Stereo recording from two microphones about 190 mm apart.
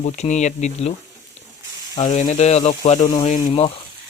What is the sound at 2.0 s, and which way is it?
Speech, 40° left (ahead or behind).